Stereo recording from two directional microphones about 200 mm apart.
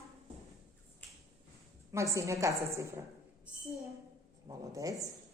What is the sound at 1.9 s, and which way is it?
A woman's voice, 15° right (ahead or behind).